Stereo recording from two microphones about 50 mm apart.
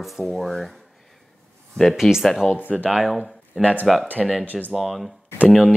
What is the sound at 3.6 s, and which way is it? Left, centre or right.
Speech, right.